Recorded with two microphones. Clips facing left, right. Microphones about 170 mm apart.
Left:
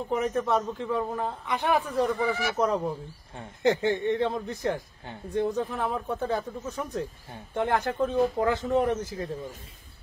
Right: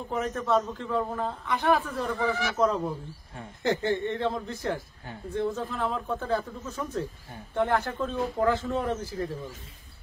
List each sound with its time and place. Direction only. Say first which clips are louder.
0.1 s a man's voice: even; 15° left (ahead or behind)